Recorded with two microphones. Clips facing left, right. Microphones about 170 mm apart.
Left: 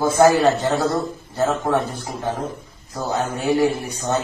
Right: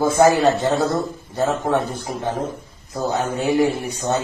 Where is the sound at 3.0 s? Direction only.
20° right (ahead or behind).